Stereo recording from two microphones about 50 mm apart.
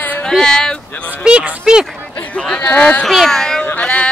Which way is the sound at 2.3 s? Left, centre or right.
Centre.